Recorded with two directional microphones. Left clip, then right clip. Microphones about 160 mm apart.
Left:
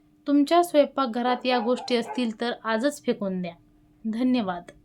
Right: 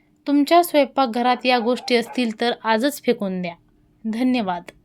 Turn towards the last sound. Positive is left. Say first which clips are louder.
# right 4 dB
turn(degrees=-20)  # may be behind; listen again after turning